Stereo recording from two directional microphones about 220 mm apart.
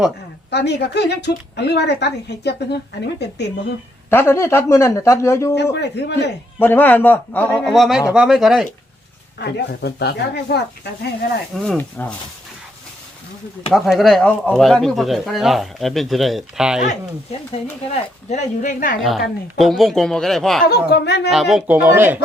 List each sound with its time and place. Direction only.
0.5 s a woman's voice: 50° left (ahead or behind)
4.1 s speech: 10° left (ahead or behind)
5.7 s a woman's voice: 50° left (ahead or behind)
6.6 s speech: 10° left (ahead or behind)
9.4 s a woman's voice: 50° left (ahead or behind)
11.6 s speech: 5° left (ahead or behind)
13.7 s speech: centre (ahead or behind)
18.3 s speech: 35° left (ahead or behind)
18.9 s speech: centre (ahead or behind)
20.7 s a woman's voice: 45° left (ahead or behind)
21.2 s speech: centre (ahead or behind)